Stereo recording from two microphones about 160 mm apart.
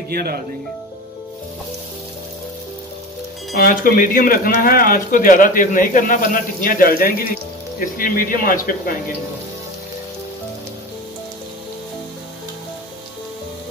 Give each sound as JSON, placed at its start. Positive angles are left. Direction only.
{"t": 0.1, "sound": "speech", "side_deg": -75}
{"t": 3.5, "sound": "speech", "side_deg": 65}